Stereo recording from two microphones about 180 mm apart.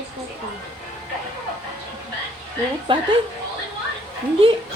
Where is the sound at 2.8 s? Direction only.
25° right (ahead or behind).